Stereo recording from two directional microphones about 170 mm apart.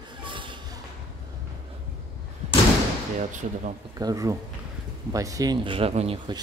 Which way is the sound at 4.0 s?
20° right (ahead or behind).